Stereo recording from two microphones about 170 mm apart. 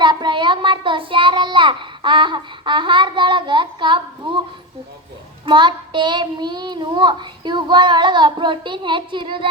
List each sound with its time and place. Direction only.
0.0 s a child's voice: 25° right (ahead or behind)
5.5 s child singing: 25° right (ahead or behind)